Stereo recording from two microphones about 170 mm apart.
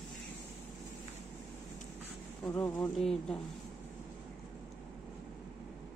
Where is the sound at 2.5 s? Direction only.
10° left (ahead or behind).